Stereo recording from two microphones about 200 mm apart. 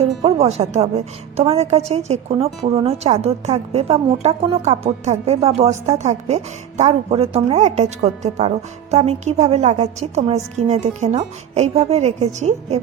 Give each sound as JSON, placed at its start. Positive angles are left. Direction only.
{"t": 0.0, "sound": "a woman's voice", "side_deg": -30}